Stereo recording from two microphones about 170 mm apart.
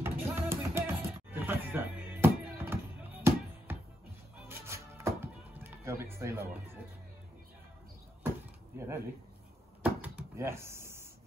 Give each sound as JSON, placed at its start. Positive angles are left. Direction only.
{"t": 0.0, "sound": "music", "side_deg": -15}
{"t": 8.7, "sound": "speech", "side_deg": -15}
{"t": 9.8, "sound": "a sound", "side_deg": -10}